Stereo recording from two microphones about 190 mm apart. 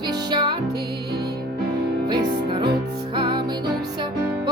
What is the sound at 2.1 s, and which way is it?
Music, 25° right (ahead or behind).